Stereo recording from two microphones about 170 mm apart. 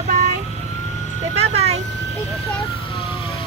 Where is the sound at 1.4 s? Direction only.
35° right (ahead or behind).